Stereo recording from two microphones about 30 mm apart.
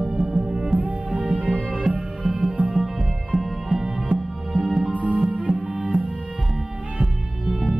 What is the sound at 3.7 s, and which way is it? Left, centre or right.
Music, centre.